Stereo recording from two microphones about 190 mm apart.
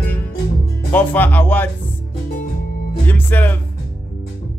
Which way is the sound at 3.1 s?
10° left (ahead or behind).